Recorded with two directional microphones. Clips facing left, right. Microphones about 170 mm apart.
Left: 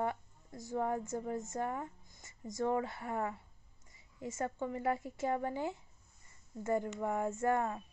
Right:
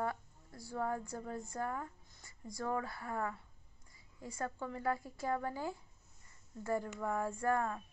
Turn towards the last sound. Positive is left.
turn(degrees=20)  # may be behind; listen again after turning